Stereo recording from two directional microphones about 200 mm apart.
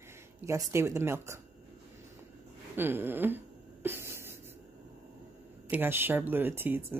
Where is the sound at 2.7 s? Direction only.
10° right (ahead or behind).